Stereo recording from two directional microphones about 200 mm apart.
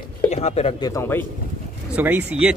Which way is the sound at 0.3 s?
30° left (ahead or behind).